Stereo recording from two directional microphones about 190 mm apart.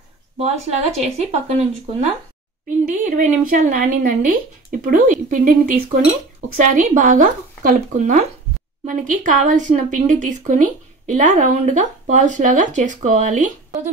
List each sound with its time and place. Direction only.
0.4 s speech: 35° right (ahead or behind)